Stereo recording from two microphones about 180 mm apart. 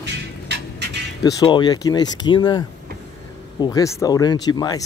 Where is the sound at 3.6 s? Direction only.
20° left (ahead or behind).